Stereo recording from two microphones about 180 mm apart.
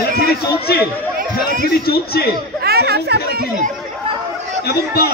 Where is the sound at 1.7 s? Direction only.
60° left (ahead or behind).